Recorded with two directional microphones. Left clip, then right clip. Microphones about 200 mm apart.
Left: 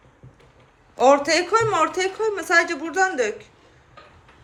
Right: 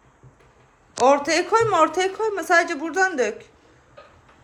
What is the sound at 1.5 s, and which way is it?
A woman's voice, 15° right (ahead or behind).